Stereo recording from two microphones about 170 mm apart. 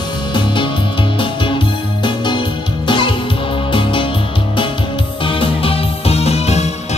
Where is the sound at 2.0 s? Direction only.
30° left (ahead or behind).